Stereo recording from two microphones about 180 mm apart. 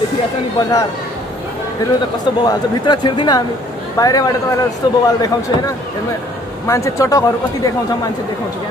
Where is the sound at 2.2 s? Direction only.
25° left (ahead or behind).